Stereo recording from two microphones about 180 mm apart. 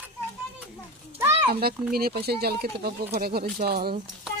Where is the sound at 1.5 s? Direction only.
60° right (ahead or behind).